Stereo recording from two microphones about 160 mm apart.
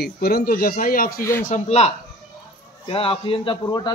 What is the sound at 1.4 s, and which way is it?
A man's voice, 45° left (ahead or behind).